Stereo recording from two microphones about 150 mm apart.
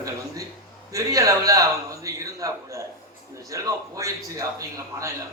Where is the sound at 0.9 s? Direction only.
20° right (ahead or behind).